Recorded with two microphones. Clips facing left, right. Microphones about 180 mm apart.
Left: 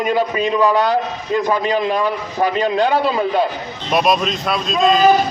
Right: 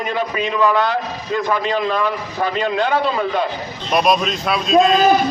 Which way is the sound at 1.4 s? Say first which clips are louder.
Left 1 dB; 15° left (ahead or behind).